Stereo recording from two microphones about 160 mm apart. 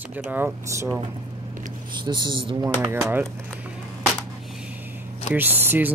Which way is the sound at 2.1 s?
30° right (ahead or behind).